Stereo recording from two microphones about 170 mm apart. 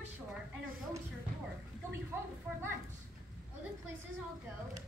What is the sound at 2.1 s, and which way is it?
Speech, 15° right (ahead or behind).